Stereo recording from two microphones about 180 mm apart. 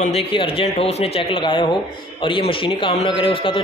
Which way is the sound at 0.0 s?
30° left (ahead or behind).